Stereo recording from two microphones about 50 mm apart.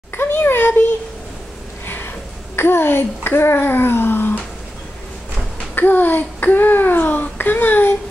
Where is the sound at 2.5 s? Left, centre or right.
Left.